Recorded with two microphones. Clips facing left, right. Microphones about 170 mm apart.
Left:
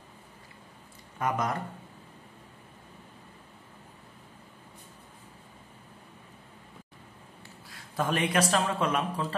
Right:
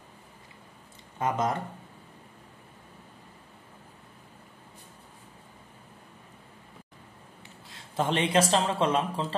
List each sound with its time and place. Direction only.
1.1 s speech: 25° right (ahead or behind)
7.6 s speech: 25° right (ahead or behind)